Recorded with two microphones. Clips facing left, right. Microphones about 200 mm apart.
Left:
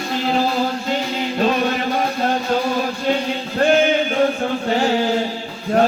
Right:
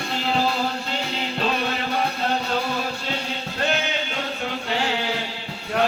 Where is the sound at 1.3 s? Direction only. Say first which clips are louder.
Left 7 dB; 45° left (ahead or behind).